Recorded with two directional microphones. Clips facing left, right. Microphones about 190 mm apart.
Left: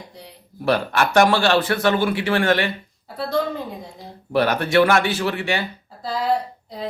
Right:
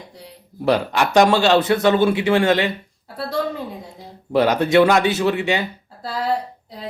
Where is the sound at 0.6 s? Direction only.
15° right (ahead or behind).